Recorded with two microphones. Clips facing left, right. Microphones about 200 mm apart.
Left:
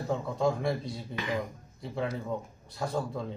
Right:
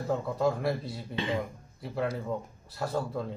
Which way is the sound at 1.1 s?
25° right (ahead or behind).